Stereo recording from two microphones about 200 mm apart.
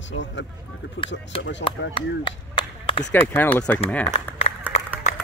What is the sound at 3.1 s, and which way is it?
Speech, 10° left (ahead or behind).